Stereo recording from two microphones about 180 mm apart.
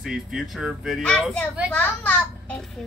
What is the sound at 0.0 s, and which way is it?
Speech, 5° right (ahead or behind).